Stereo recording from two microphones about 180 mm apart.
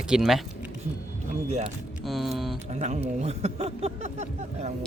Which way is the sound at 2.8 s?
40° right (ahead or behind).